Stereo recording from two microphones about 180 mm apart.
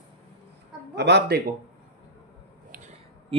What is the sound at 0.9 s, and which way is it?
Speech, 70° right (ahead or behind).